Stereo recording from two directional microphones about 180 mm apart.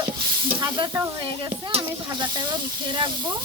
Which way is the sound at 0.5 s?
25° right (ahead or behind).